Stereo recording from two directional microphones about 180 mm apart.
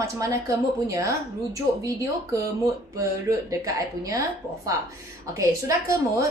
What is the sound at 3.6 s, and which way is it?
A woman's voice, 20° right (ahead or behind).